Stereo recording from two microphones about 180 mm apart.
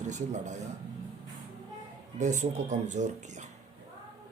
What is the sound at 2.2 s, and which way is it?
Speech, 40° right (ahead or behind).